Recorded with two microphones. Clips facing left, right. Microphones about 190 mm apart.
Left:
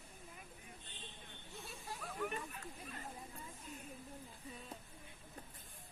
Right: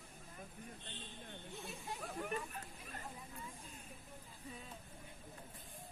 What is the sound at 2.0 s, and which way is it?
Chatter, 40° right (ahead or behind).